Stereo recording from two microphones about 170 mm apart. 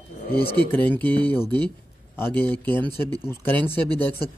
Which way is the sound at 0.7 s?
10° left (ahead or behind).